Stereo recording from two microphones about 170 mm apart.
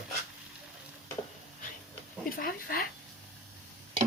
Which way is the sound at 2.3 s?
60° left (ahead or behind).